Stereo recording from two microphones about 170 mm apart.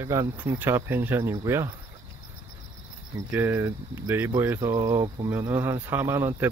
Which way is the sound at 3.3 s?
10° right (ahead or behind).